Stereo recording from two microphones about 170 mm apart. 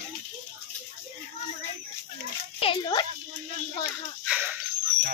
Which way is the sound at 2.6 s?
30° left (ahead or behind).